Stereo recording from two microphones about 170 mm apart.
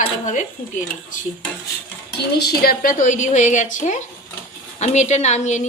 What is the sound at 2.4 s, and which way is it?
A woman's voice, 60° left (ahead or behind).